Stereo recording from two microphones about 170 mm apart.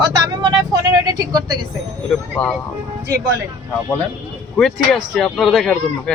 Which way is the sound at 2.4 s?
5° left (ahead or behind).